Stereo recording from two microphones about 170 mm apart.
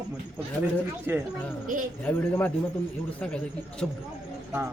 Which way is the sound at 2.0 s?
10° left (ahead or behind).